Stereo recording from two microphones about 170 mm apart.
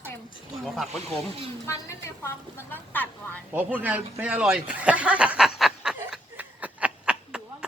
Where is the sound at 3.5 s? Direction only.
10° right (ahead or behind).